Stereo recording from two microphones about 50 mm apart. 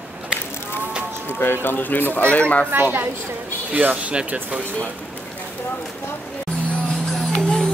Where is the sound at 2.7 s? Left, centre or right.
Right.